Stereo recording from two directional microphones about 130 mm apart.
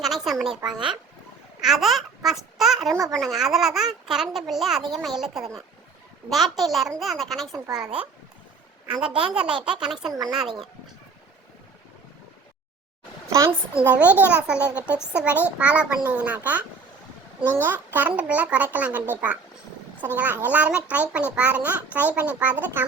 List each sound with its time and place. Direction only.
0.0 s a sound: centre (ahead or behind)
0.7 s a child's voice: 5° right (ahead or behind)
8.9 s a child's voice: 5° right (ahead or behind)
13.3 s a child's voice: 20° right (ahead or behind)